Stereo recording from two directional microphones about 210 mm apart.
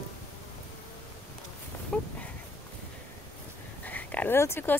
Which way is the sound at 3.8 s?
10° left (ahead or behind).